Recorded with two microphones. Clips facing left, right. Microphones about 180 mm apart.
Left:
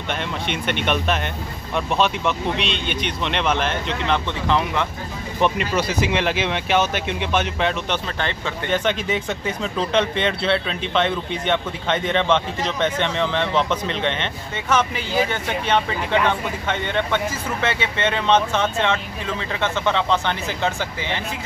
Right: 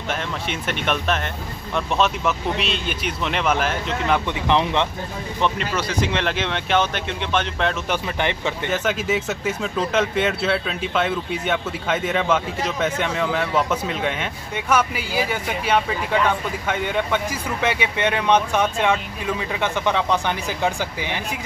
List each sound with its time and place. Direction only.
0.1 s speech: 5° right (ahead or behind)
4.5 s speech: 20° right (ahead or behind)
5.4 s speech: 15° left (ahead or behind)
7.9 s speech: 15° right (ahead or behind)
8.6 s speech: 5° right (ahead or behind)